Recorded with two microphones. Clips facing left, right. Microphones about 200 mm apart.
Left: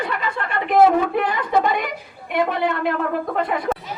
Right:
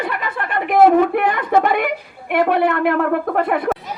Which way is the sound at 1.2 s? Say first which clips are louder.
Right 3 dB; 60° right (ahead or behind).